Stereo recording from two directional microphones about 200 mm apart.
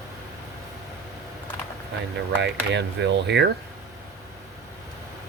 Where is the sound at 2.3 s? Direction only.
60° right (ahead or behind).